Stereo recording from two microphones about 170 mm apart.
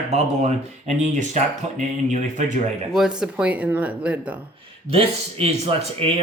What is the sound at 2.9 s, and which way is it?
Speech, 5° right (ahead or behind).